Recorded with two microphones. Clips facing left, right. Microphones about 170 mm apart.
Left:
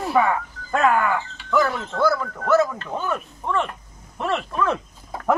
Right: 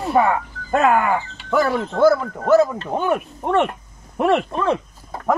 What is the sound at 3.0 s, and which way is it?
Speech, 65° right (ahead or behind).